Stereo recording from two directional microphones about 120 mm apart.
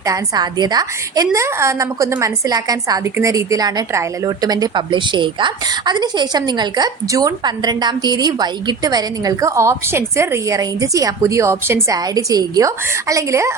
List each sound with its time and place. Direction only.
0.0 s a woman's voice: 30° right (ahead or behind)